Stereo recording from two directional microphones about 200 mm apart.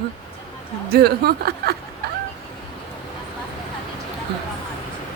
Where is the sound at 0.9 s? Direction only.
50° right (ahead or behind).